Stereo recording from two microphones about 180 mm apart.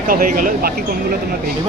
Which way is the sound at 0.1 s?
55° right (ahead or behind).